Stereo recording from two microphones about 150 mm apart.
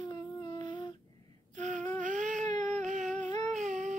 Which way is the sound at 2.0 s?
55° right (ahead or behind).